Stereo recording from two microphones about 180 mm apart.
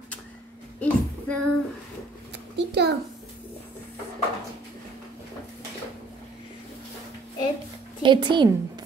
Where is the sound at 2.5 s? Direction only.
70° right (ahead or behind).